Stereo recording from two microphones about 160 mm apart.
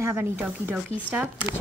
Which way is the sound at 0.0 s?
10° right (ahead or behind).